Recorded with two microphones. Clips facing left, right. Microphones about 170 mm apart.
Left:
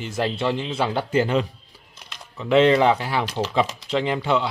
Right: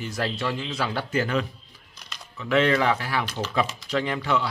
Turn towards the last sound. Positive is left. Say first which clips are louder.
# left 3 dB
turn(degrees=25)  # may be behind; listen again after turning